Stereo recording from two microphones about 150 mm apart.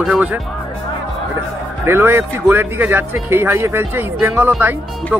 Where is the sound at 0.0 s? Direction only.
10° right (ahead or behind).